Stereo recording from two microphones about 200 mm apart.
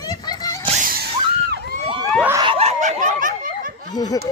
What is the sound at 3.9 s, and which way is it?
Speech, 20° left (ahead or behind).